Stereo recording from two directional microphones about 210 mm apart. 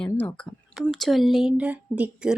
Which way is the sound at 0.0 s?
10° left (ahead or behind).